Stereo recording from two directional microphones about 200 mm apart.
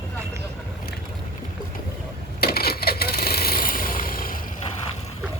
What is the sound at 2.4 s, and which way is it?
Coin, 50° left (ahead or behind).